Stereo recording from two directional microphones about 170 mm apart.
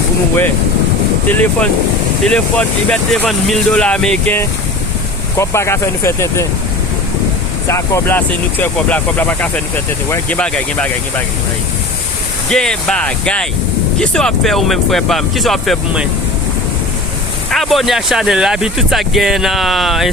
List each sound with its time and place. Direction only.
1.3 s speech: 10° left (ahead or behind)
5.4 s speech: 15° left (ahead or behind)
7.7 s speech: 15° left (ahead or behind)
12.5 s speech: 5° left (ahead or behind)
17.5 s speech: centre (ahead or behind)